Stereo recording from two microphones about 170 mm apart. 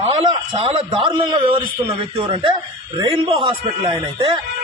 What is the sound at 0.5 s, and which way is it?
A man's voice, 35° right (ahead or behind).